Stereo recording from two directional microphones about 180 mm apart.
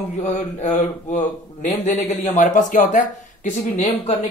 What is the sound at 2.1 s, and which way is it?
Speech, 40° left (ahead or behind).